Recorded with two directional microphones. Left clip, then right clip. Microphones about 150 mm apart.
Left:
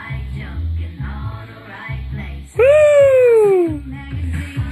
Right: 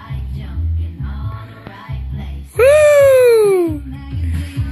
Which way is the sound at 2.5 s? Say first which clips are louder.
Right 1 dB; 10° right (ahead or behind).